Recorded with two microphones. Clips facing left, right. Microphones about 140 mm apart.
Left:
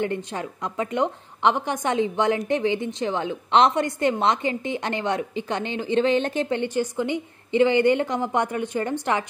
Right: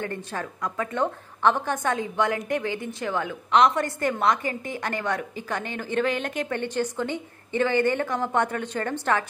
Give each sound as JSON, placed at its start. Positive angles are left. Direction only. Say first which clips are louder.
{"t": 0.0, "sound": "a woman's voice", "louder": "left 4 dB", "side_deg": 20}
{"t": 6.6, "sound": "a woman's voice", "louder": "left 2 dB", "side_deg": 15}